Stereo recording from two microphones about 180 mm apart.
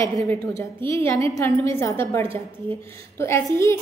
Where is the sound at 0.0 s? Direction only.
15° left (ahead or behind).